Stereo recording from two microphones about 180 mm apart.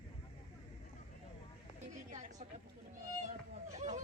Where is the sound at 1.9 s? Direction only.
40° right (ahead or behind).